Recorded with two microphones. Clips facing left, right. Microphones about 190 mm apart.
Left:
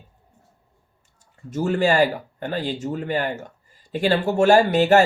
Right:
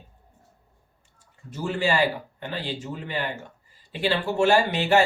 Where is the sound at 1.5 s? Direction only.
45° left (ahead or behind).